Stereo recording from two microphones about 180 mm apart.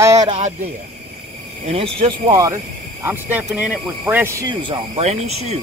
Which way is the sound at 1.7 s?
30° right (ahead or behind).